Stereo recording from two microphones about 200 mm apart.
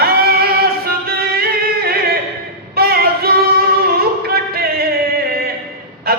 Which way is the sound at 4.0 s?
50° right (ahead or behind).